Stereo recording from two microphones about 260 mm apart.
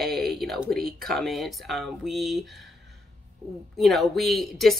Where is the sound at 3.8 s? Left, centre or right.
Centre.